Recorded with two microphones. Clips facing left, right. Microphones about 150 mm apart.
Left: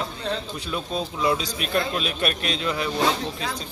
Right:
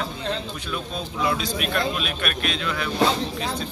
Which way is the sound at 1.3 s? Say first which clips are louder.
Even; 35° left (ahead or behind).